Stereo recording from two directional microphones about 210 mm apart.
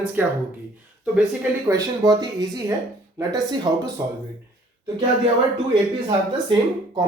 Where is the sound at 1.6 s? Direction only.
15° right (ahead or behind).